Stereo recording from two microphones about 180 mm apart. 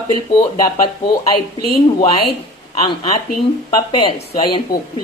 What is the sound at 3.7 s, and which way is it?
Speech, 35° left (ahead or behind).